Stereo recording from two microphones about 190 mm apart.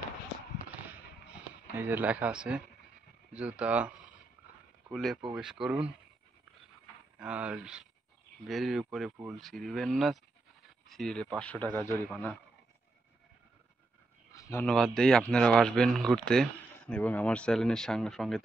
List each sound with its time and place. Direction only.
1.3 s speech: 10° right (ahead or behind)
4.9 s speech: centre (ahead or behind)
7.2 s speech: 5° right (ahead or behind); by 12.0 s 10° left (ahead or behind)
14.3 s a sound: 15° left (ahead or behind)
14.7 s speech: 5° left (ahead or behind)